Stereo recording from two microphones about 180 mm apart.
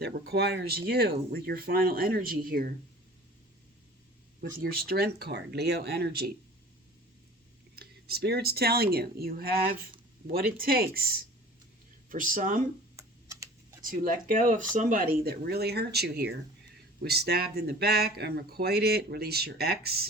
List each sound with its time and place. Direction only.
0.0 s speech: 60° right (ahead or behind)
4.4 s speech: 55° right (ahead or behind)
7.8 s speech: 60° right (ahead or behind)
13.0 s typing: 15° right (ahead or behind)
13.8 s speech: 50° right (ahead or behind)